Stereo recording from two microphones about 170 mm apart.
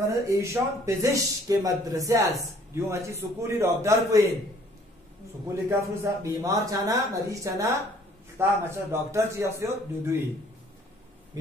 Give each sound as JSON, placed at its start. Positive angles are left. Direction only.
{"t": 0.0, "sound": "a man's voice", "side_deg": -20}
{"t": 5.7, "sound": "a man's voice", "side_deg": -20}